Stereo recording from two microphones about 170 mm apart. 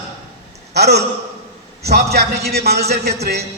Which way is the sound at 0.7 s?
75° right (ahead or behind).